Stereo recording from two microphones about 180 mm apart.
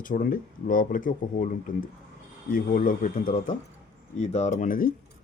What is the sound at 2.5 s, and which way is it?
Speech, 50° left (ahead or behind).